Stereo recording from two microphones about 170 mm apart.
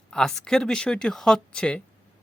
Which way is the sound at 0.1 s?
5° left (ahead or behind).